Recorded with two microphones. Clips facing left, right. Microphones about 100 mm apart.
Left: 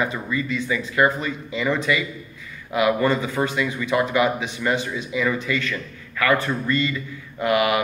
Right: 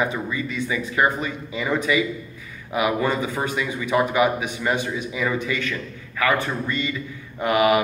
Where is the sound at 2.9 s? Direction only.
15° right (ahead or behind).